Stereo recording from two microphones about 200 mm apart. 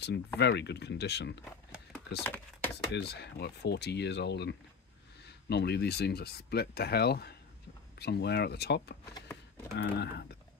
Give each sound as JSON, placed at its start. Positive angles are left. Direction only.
{"t": 0.4, "sound": "speech", "side_deg": 55}
{"t": 1.4, "sound": "a sound", "side_deg": 5}
{"t": 2.9, "sound": "speech", "side_deg": 60}